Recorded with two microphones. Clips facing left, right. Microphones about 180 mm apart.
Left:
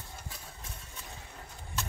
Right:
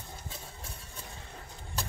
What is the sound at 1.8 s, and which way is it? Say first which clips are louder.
Horse: left 1 dB; 35° right (ahead or behind).